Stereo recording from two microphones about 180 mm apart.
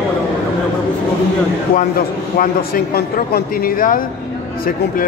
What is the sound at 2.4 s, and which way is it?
Speech, 55° left (ahead or behind).